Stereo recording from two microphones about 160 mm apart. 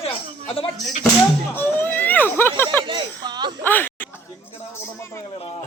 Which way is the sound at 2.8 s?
30° right (ahead or behind).